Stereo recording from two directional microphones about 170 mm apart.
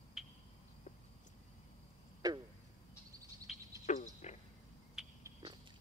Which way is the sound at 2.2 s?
25° right (ahead or behind).